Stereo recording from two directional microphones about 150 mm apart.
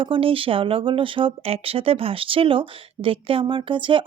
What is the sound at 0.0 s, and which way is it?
A woman's voice, 35° right (ahead or behind).